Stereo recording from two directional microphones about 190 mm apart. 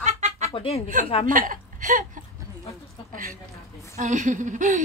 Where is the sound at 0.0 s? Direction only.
35° right (ahead or behind).